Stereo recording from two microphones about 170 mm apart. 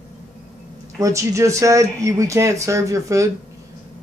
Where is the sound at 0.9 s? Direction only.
15° right (ahead or behind).